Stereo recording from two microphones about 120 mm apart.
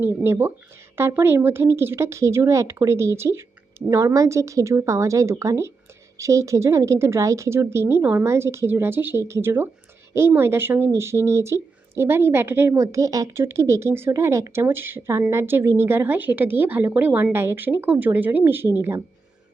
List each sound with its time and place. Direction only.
0.3 s a woman's voice: 20° right (ahead or behind)